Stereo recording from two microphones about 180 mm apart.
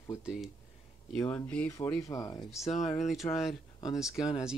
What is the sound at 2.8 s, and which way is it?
Speech, centre (ahead or behind).